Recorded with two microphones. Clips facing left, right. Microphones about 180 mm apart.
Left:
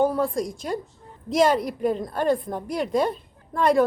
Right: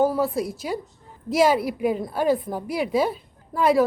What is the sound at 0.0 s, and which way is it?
A woman's voice, 5° right (ahead or behind).